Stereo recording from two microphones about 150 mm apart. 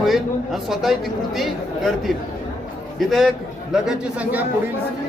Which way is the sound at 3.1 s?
Centre (ahead or behind).